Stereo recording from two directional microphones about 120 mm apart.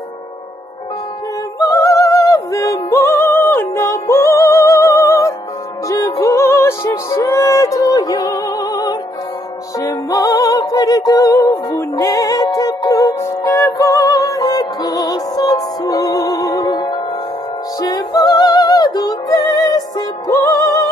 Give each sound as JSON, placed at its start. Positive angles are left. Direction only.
{"t": 1.6, "sound": "music", "side_deg": 25}